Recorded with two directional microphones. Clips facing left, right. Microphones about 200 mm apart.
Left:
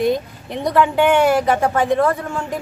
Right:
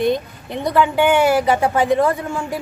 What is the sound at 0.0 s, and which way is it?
A woman's voice, centre (ahead or behind).